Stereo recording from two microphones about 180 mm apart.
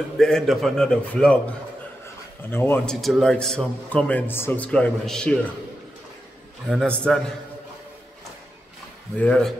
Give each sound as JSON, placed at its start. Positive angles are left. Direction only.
{"t": 0.2, "sound": "a man's voice", "side_deg": 0}
{"t": 2.5, "sound": "a man's voice", "side_deg": 10}
{"t": 6.7, "sound": "a man's voice", "side_deg": 5}
{"t": 9.2, "sound": "a man's voice", "side_deg": 5}